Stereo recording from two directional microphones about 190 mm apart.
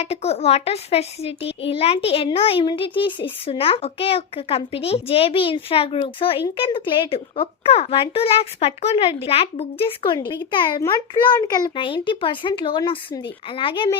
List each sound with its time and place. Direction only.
0.0 s a child's voice: 35° left (ahead or behind)